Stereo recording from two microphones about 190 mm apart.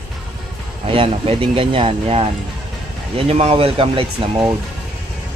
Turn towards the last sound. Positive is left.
turn(degrees=-30)  # may be behind; listen again after turning